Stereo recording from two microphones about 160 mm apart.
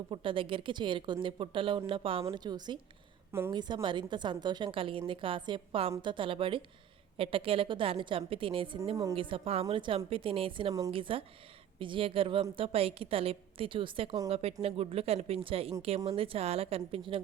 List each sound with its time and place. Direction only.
0.1 s a woman's voice: 30° right (ahead or behind)